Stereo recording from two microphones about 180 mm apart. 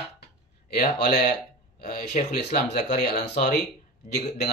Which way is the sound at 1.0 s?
55° left (ahead or behind).